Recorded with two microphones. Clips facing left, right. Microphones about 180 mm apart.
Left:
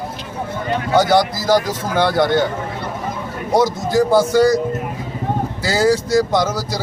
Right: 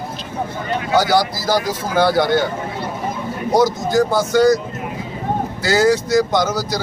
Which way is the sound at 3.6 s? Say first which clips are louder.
Even; 30° left (ahead or behind).